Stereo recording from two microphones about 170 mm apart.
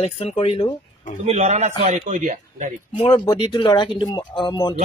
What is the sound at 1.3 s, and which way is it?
A man's voice, 40° right (ahead or behind).